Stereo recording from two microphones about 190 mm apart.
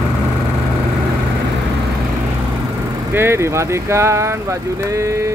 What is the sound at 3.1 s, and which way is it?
Speech, 15° right (ahead or behind).